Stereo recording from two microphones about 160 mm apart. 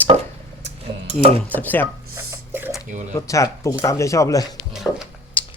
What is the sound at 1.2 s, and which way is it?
Dishes, 40° right (ahead or behind).